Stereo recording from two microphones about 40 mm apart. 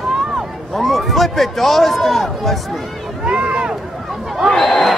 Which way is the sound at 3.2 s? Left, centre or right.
Right.